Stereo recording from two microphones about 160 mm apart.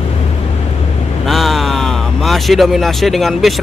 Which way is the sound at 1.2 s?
Centre (ahead or behind).